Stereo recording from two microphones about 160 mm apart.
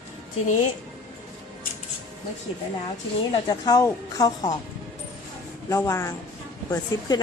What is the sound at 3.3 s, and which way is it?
A woman's voice, 25° left (ahead or behind).